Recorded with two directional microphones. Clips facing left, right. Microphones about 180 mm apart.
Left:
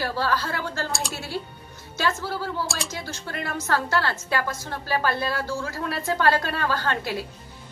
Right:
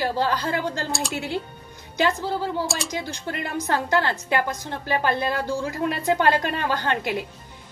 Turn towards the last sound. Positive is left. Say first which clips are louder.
# right 2 dB
turn(degrees=-20)  # may be behind; listen again after turning